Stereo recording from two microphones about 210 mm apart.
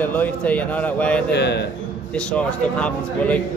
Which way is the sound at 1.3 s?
55° left (ahead or behind).